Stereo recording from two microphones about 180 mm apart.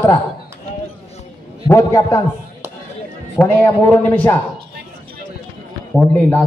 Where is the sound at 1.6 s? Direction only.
15° left (ahead or behind).